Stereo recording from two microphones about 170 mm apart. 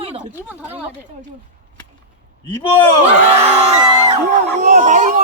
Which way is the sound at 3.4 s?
35° right (ahead or behind).